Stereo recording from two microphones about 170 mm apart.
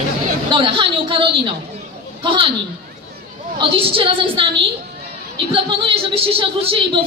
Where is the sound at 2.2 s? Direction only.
30° right (ahead or behind).